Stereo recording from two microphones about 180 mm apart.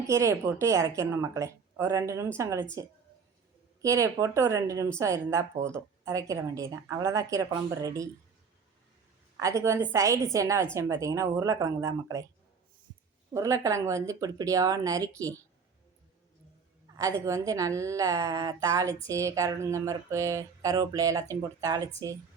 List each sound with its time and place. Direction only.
0.0 s speech: 15° right (ahead or behind)
3.8 s a woman's voice: 15° right (ahead or behind)
9.4 s speech: 15° right (ahead or behind)
13.3 s speech: 15° right (ahead or behind)
17.0 s speech: 15° right (ahead or behind)